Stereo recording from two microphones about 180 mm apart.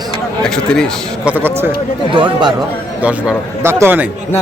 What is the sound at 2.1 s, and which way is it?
Speech, 25° right (ahead or behind).